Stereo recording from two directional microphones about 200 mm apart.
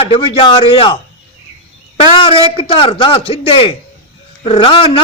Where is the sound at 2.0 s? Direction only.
25° left (ahead or behind).